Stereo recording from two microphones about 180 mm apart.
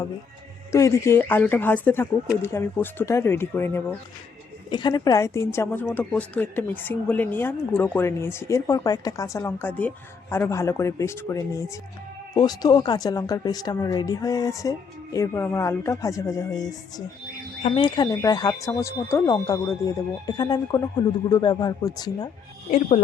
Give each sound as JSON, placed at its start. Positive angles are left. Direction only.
{"t": 0.7, "sound": "a woman's voice", "side_deg": 15}
{"t": 4.7, "sound": "a woman's voice", "side_deg": 25}
{"t": 17.7, "sound": "speech", "side_deg": 25}